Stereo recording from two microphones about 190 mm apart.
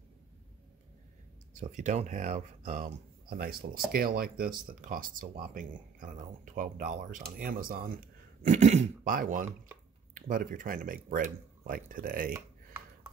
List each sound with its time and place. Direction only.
1.5 s speech: 40° right (ahead or behind)